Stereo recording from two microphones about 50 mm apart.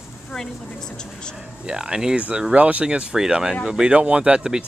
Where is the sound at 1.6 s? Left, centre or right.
Centre.